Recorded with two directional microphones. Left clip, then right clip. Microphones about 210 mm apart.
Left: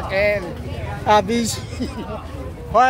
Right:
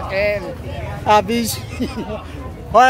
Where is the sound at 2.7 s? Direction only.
25° right (ahead or behind).